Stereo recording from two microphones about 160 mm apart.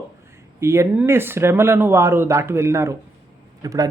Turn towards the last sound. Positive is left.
turn(degrees=-20)  # may be behind; listen again after turning